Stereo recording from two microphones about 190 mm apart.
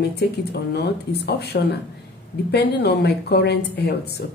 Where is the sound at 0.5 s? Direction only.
60° left (ahead or behind).